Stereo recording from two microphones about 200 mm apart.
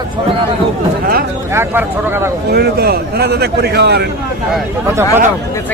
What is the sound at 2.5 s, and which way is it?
A man's voice, 50° right (ahead or behind).